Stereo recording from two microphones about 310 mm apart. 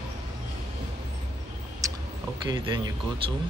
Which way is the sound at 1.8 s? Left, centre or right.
Centre.